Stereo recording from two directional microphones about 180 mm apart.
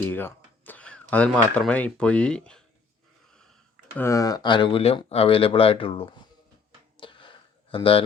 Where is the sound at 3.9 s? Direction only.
15° left (ahead or behind).